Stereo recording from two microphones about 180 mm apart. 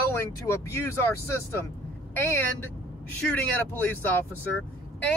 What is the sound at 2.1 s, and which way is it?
Speech, 10° left (ahead or behind).